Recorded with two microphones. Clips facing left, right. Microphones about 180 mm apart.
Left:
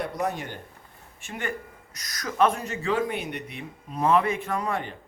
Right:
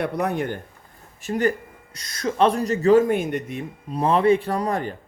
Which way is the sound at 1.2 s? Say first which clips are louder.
Right 11 dB; 40° right (ahead or behind).